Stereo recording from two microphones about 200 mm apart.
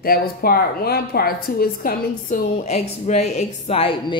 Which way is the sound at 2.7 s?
30° left (ahead or behind).